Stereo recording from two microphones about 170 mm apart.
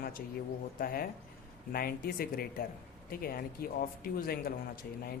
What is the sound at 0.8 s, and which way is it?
A man's voice, 55° left (ahead or behind).